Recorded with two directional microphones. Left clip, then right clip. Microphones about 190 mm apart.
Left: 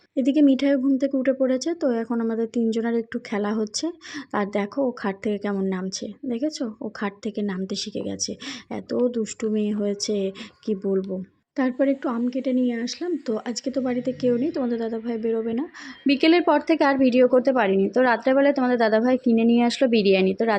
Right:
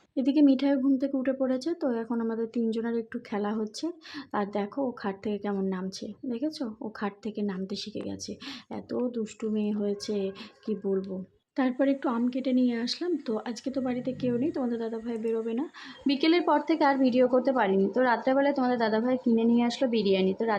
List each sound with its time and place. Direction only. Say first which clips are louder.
0.2 s a woman's voice: left 4 dB; 15° left (ahead or behind)
11.5 s a woman's voice: left 4 dB; 15° left (ahead or behind)